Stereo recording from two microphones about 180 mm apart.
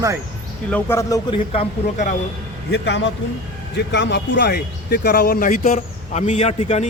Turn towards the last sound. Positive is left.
turn(degrees=35)  # may be behind; listen again after turning